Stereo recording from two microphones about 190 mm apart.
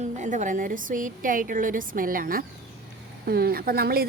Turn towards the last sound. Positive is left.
turn(degrees=-55)  # may be behind; listen again after turning